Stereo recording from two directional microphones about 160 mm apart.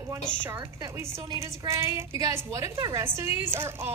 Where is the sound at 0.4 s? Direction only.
15° right (ahead or behind).